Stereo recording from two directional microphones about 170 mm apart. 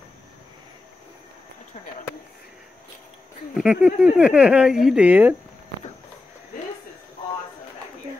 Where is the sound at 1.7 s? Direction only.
40° left (ahead or behind).